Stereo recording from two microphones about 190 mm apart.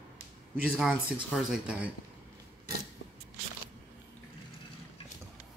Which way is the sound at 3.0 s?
75° left (ahead or behind).